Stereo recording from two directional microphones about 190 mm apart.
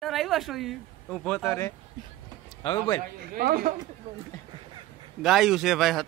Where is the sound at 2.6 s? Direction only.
20° left (ahead or behind).